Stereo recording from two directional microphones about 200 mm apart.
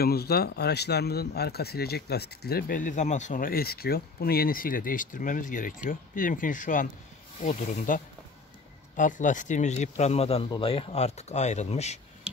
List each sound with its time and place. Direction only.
0.0 s speech: 50° left (ahead or behind); by 12.0 s 35° left (ahead or behind)